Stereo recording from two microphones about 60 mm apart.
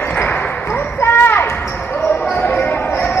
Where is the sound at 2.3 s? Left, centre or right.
Left.